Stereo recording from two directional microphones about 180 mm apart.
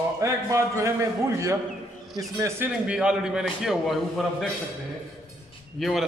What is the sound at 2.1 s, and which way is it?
Speech, 20° right (ahead or behind).